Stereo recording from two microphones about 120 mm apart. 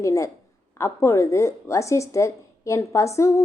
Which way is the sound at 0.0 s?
25° left (ahead or behind).